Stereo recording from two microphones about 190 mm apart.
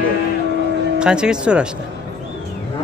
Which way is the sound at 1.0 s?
5° right (ahead or behind).